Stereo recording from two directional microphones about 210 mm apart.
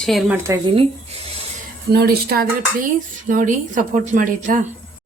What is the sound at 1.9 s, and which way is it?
Speech, 50° right (ahead or behind).